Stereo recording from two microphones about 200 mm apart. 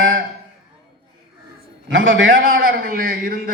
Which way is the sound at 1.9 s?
75° right (ahead or behind).